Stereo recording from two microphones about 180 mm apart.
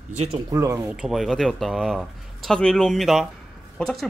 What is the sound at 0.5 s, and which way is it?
Speech, 20° right (ahead or behind).